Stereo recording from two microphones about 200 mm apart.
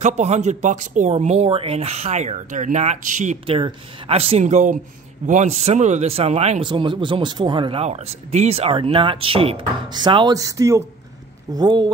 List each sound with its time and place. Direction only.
0.0 s speech: 35° right (ahead or behind)